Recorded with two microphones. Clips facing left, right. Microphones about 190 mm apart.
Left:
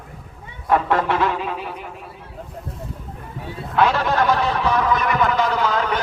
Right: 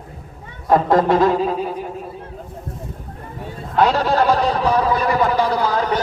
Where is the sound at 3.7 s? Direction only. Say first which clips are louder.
Right 2 dB; 35° right (ahead or behind).